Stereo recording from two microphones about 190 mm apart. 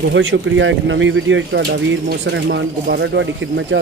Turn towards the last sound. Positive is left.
turn(degrees=-75)  # may be behind; listen again after turning